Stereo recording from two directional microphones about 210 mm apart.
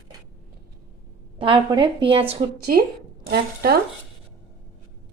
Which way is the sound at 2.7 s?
40° right (ahead or behind).